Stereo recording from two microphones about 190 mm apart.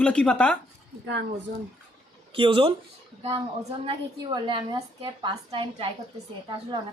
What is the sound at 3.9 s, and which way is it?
A woman's voice, 25° right (ahead or behind).